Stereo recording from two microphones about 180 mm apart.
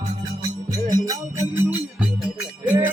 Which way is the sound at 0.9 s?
20° right (ahead or behind).